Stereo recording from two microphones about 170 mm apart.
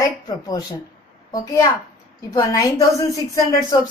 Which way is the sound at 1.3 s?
20° left (ahead or behind).